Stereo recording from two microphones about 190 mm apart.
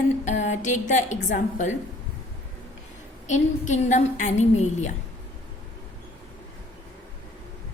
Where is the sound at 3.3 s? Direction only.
40° left (ahead or behind).